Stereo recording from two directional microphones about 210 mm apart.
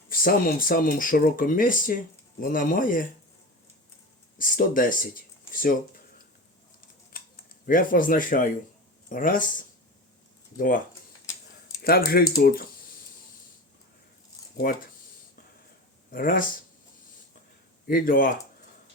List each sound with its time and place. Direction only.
0.1 s speech: 45° left (ahead or behind)
4.4 s speech: 40° left (ahead or behind)
7.1 s a sound: 45° left (ahead or behind)
7.7 s speech: 40° left (ahead or behind)
11.8 s speech: 45° left (ahead or behind)
14.7 s speech: 40° left (ahead or behind)
16.1 s speech: 40° left (ahead or behind)
17.8 s speech: 40° left (ahead or behind)